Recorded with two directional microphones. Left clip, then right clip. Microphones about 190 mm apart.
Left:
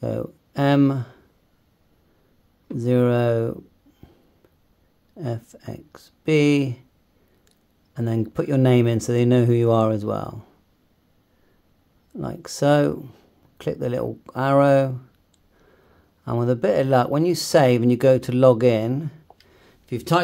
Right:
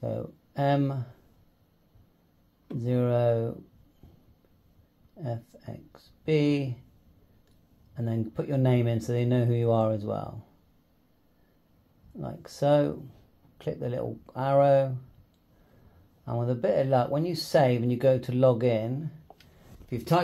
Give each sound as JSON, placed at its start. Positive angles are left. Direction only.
{"t": 0.0, "sound": "a sound", "side_deg": 45}
{"t": 2.8, "sound": "speech", "side_deg": 45}
{"t": 5.1, "sound": "speech", "side_deg": 45}
{"t": 7.9, "sound": "speech", "side_deg": 45}
{"t": 12.2, "sound": "speech", "side_deg": 45}
{"t": 16.3, "sound": "speech", "side_deg": 45}